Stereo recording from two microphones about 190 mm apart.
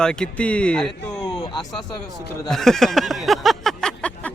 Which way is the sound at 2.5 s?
Centre (ahead or behind).